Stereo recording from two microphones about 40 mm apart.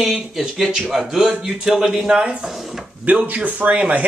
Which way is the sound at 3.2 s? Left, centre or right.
Right.